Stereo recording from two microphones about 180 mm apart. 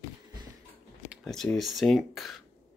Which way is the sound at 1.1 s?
Centre (ahead or behind).